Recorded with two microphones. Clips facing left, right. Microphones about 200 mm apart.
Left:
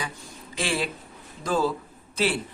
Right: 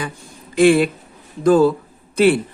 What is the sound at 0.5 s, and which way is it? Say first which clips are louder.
A woman's voice: right 15 dB; 55° right (ahead or behind).